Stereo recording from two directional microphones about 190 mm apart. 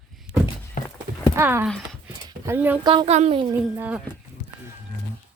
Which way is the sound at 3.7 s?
10° right (ahead or behind).